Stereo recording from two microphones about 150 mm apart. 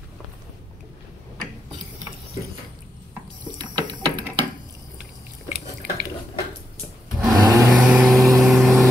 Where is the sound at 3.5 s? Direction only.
30° right (ahead or behind).